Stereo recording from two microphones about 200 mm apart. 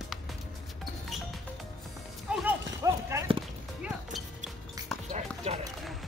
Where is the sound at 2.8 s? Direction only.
15° right (ahead or behind).